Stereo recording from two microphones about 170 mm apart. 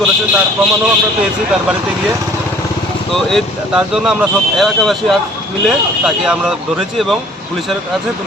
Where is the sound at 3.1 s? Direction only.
Centre (ahead or behind).